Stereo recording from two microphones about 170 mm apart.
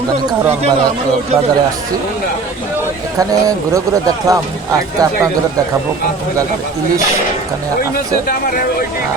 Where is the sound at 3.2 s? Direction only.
20° right (ahead or behind).